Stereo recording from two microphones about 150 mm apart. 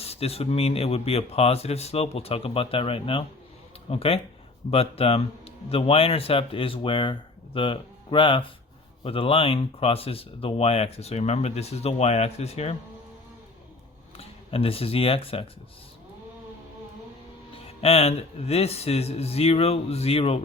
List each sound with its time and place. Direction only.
0.0 s speech: 40° left (ahead or behind)
14.2 s speech: 40° left (ahead or behind)
17.7 s speech: 40° left (ahead or behind)